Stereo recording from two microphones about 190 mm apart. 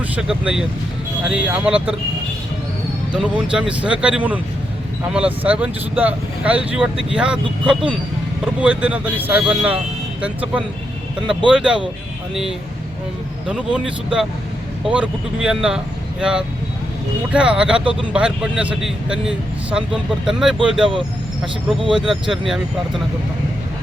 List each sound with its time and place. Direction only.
0.2 s a man's voice: 5° right (ahead or behind)
3.1 s a man's voice: 5° right (ahead or behind)
17.3 s a man's voice: 5° right (ahead or behind)
21.9 s a man's voice: 5° right (ahead or behind)